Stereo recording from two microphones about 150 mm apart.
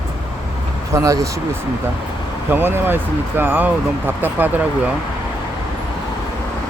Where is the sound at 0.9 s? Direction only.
20° right (ahead or behind).